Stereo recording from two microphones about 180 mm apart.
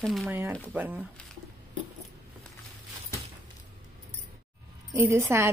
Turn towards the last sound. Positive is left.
turn(degrees=-15)  # may be behind; listen again after turning